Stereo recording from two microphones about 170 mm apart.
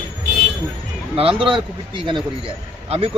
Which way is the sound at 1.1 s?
30° right (ahead or behind).